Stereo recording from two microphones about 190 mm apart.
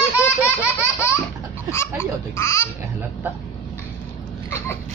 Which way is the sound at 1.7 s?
15° left (ahead or behind).